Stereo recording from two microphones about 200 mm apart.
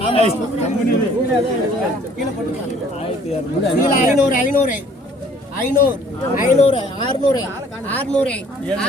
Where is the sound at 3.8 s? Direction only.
40° left (ahead or behind).